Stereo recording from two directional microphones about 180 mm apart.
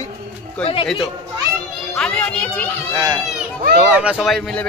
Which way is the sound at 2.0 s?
5° left (ahead or behind).